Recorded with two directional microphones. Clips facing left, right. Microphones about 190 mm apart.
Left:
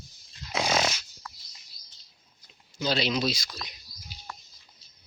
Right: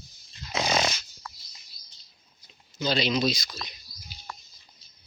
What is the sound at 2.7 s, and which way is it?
Speech, 5° left (ahead or behind).